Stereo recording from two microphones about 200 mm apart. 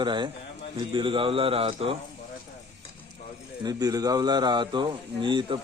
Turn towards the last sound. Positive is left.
turn(degrees=-25)  # may be behind; listen again after turning